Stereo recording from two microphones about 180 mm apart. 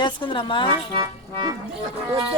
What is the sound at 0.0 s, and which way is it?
Speech, 30° left (ahead or behind).